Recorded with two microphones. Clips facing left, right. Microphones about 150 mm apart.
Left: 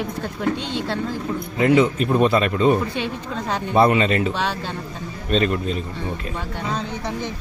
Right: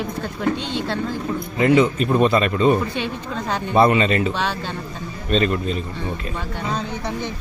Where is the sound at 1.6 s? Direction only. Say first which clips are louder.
Even; centre (ahead or behind).